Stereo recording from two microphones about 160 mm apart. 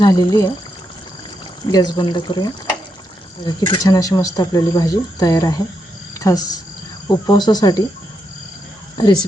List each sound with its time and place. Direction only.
0.0 s speech: 25° left (ahead or behind)
1.7 s speech: 25° left (ahead or behind)
9.0 s speech: 25° left (ahead or behind)